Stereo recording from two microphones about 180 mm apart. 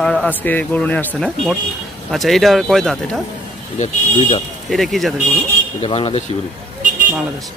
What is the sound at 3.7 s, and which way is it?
Speech, 40° left (ahead or behind).